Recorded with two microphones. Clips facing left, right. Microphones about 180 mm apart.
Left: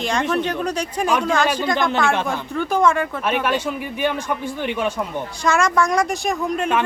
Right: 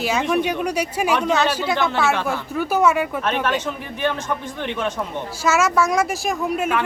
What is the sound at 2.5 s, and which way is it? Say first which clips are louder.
Speech: even; 5° right (ahead or behind).